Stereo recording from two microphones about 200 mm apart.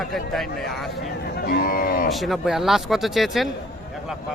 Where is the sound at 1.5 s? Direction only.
45° left (ahead or behind).